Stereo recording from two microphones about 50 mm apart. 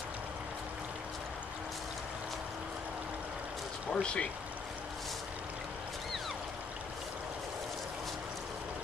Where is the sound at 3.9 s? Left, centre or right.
Left.